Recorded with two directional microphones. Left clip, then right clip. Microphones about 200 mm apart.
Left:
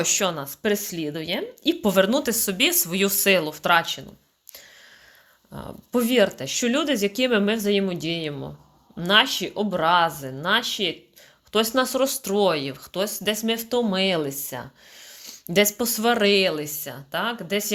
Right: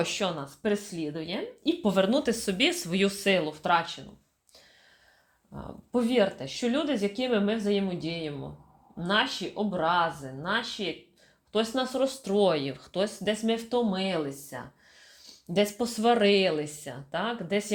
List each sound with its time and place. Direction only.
0.0 s speech: 25° left (ahead or behind)
5.5 s speech: 30° left (ahead or behind); by 17.7 s 10° left (ahead or behind)